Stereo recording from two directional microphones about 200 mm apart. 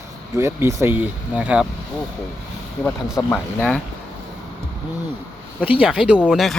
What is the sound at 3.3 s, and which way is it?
Speech, 10° left (ahead or behind).